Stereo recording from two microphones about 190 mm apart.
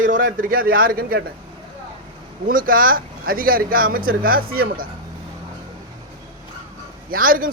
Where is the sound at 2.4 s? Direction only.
45° right (ahead or behind).